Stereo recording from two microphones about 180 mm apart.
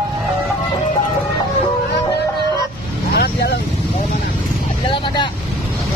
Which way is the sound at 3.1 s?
60° left (ahead or behind).